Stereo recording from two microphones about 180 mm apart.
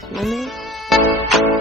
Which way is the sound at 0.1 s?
Centre (ahead or behind).